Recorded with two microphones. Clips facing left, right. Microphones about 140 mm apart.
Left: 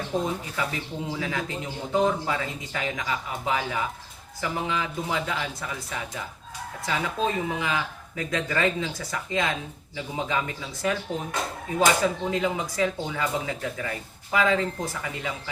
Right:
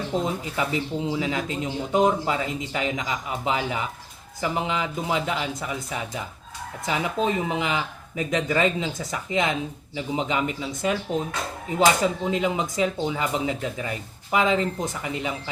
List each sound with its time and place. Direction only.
0.1 s speech: 20° right (ahead or behind)